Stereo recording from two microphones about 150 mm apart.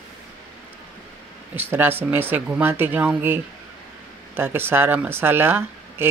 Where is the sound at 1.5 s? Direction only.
15° right (ahead or behind).